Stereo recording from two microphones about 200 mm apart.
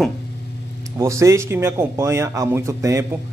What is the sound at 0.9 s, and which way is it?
Speech, 15° right (ahead or behind).